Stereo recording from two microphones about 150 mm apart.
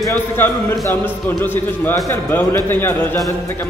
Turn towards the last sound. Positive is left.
turn(degrees=15)  # may be behind; listen again after turning